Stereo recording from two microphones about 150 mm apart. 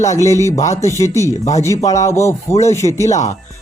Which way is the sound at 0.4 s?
20° left (ahead or behind).